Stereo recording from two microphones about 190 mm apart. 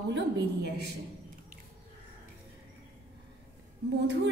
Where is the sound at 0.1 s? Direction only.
60° right (ahead or behind).